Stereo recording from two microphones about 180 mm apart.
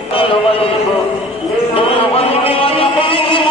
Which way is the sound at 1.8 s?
30° left (ahead or behind).